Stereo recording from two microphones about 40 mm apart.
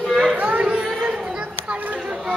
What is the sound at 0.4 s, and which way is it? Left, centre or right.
Chatter, right.